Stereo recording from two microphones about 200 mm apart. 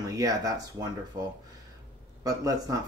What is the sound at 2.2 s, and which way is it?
Speech, 15° right (ahead or behind).